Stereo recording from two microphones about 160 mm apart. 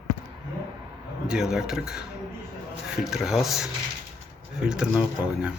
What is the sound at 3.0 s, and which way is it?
Speech, centre (ahead or behind).